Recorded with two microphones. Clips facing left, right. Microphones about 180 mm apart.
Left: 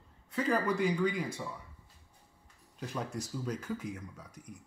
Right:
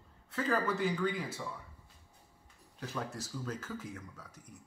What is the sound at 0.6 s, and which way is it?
Speech, 5° right (ahead or behind).